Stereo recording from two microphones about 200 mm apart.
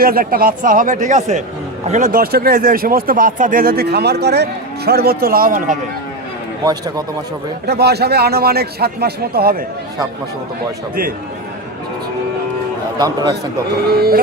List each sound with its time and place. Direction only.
0.0 s speech: 45° right (ahead or behind)
6.7 s a man's voice: 20° right (ahead or behind)
7.7 s speech: 55° right (ahead or behind)
13.0 s a man's voice: 20° right (ahead or behind)
13.8 s speech: 50° right (ahead or behind)